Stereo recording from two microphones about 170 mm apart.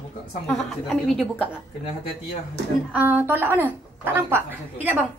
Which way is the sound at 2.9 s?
10° right (ahead or behind).